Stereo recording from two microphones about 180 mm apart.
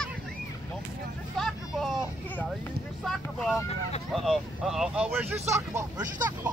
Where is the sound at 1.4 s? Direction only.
Centre (ahead or behind).